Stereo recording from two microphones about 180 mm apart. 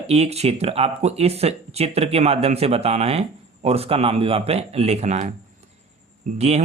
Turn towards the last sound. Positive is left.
turn(degrees=-35)  # may be behind; listen again after turning